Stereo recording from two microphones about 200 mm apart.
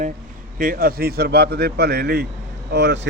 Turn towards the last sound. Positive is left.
turn(degrees=-60)  # may be behind; listen again after turning